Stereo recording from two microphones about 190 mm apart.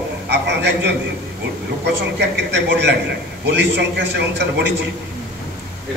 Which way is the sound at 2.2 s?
65° right (ahead or behind).